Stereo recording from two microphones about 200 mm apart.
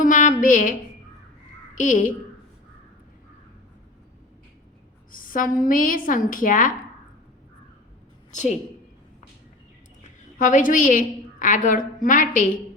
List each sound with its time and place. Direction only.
0.0 s a sound: 40° left (ahead or behind)
1.8 s a woman's voice: 40° left (ahead or behind)
5.1 s a woman's voice: 45° left (ahead or behind)
8.3 s a woman's voice: 35° left (ahead or behind)
10.3 s a woman's voice: 40° left (ahead or behind)